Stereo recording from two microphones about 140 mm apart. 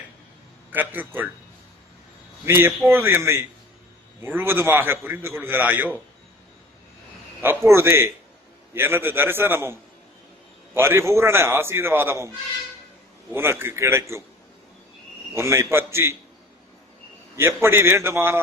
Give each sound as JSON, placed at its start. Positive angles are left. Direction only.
{"t": 0.7, "sound": "a man's voice", "side_deg": -15}
{"t": 2.4, "sound": "a man's voice", "side_deg": -15}
{"t": 7.4, "sound": "a man's voice", "side_deg": -15}
{"t": 10.8, "sound": "a man's voice", "side_deg": -15}
{"t": 13.3, "sound": "a man's voice", "side_deg": -15}
{"t": 15.4, "sound": "a man's voice", "side_deg": -20}
{"t": 17.3, "sound": "a man's voice", "side_deg": -15}